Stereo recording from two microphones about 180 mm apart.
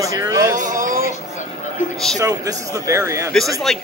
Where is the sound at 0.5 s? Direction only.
45° right (ahead or behind).